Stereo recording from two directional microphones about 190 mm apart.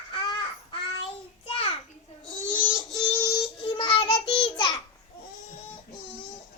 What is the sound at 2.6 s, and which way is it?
Child singing, 5° left (ahead or behind).